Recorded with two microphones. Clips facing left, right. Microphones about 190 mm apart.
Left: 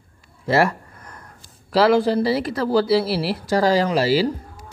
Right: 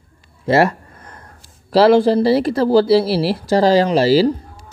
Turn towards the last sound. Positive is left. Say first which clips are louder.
# right 5 dB
turn(degrees=-30)  # may be behind; listen again after turning